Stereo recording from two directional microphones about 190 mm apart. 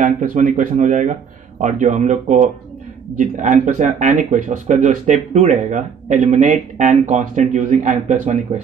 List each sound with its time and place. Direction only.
0.0 s speech: 40° right (ahead or behind)